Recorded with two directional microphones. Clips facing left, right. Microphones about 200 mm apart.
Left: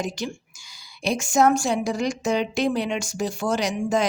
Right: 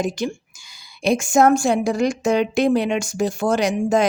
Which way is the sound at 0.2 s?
55° right (ahead or behind).